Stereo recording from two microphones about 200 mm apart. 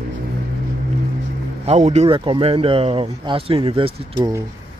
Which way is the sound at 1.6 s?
35° right (ahead or behind).